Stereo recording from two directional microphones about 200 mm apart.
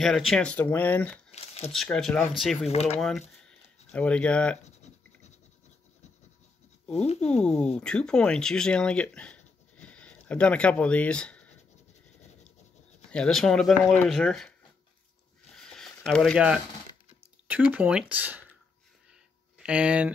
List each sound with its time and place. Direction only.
0.0 s speech: centre (ahead or behind)
1.3 s a sound: 30° left (ahead or behind)
1.7 s speech: centre (ahead or behind)
2.7 s speech: 30° left (ahead or behind)
3.0 s speech: centre (ahead or behind)
4.6 s writing: 35° left (ahead or behind)
7.4 s speech: 5° left (ahead or behind)
13.1 s speech: 5° left (ahead or behind)
15.5 s a sound: centre (ahead or behind)
17.5 s speech: 5° right (ahead or behind)
19.6 s speech: 5° right (ahead or behind)